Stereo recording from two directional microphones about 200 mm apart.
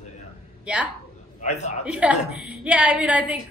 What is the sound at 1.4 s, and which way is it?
Speech, 35° left (ahead or behind).